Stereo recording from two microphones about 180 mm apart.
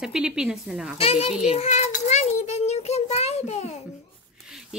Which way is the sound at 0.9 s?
35° left (ahead or behind).